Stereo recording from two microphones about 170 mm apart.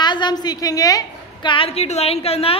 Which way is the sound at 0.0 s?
25° left (ahead or behind).